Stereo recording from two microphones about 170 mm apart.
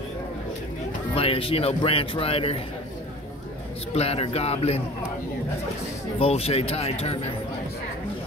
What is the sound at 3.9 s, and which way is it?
Speech, 35° left (ahead or behind).